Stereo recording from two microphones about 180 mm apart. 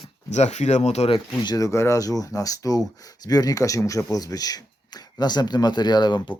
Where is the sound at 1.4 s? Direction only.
20° left (ahead or behind).